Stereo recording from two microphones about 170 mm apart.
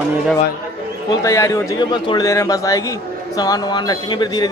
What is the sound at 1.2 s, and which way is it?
A man's voice, 15° left (ahead or behind).